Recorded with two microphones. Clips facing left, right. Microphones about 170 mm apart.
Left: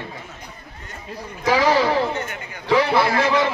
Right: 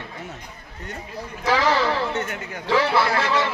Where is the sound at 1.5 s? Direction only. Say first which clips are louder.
Left 3 dB; 10° left (ahead or behind).